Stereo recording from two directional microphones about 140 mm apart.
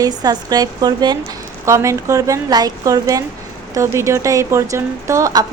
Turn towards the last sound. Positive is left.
turn(degrees=-25)  # may be behind; listen again after turning